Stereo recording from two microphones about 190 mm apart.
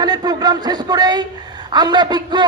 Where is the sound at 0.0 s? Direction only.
20° right (ahead or behind).